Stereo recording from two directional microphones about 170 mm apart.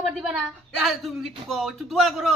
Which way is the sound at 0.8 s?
Centre (ahead or behind).